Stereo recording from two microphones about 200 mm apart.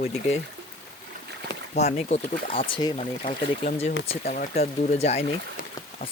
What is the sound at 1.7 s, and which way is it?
Speech, 35° left (ahead or behind).